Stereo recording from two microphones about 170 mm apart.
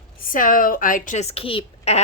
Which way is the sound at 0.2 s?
55° left (ahead or behind).